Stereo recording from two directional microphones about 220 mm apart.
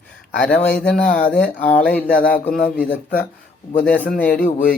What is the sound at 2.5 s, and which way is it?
Speech, 40° left (ahead or behind).